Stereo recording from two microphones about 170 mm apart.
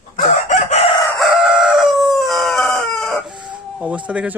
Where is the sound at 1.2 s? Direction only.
5° right (ahead or behind).